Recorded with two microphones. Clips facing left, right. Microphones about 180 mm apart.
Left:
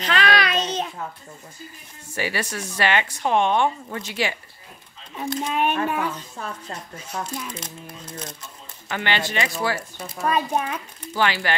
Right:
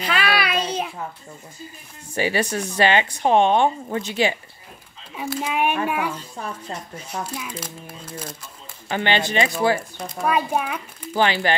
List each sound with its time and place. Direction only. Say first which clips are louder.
0.0 s child singing: left 1 dB; 10° right (ahead or behind)
2.1 s speech: right 5 dB; 25° right (ahead or behind)
5.1 s a child's voice: even; 5° right (ahead or behind)
8.8 s speech: right 4 dB; 25° right (ahead or behind)
10.2 s a child's voice: right 1 dB; 10° right (ahead or behind)
11.1 s speech: right 3 dB; 20° right (ahead or behind)